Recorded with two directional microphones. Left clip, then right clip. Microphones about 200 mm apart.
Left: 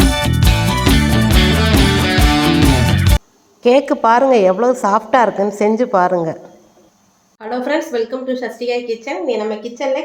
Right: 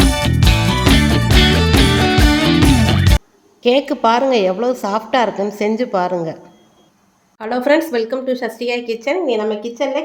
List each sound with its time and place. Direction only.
0.0 s music: centre (ahead or behind)
3.6 s a woman's voice: 10° left (ahead or behind)
7.3 s a woman's voice: 45° right (ahead or behind)